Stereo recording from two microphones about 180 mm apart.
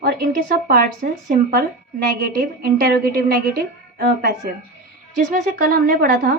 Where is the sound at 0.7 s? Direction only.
50° right (ahead or behind).